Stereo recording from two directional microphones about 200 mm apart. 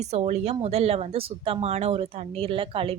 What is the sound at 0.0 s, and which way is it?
A woman's voice, 35° right (ahead or behind).